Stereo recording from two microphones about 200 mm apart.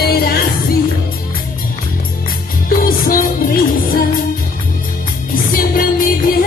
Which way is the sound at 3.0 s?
45° left (ahead or behind).